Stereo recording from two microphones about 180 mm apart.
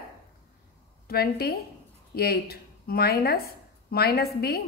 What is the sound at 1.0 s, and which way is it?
A woman's voice, 60° left (ahead or behind).